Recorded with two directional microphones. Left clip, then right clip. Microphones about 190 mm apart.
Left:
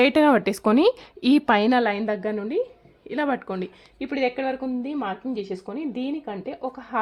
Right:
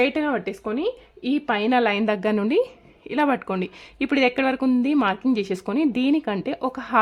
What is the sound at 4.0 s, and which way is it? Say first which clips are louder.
Speech: right 4 dB; 30° right (ahead or behind).